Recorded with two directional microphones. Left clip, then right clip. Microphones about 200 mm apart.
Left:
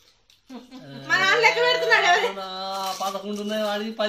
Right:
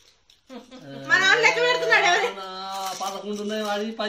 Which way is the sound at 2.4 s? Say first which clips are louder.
Left 2 dB; 45° left (ahead or behind).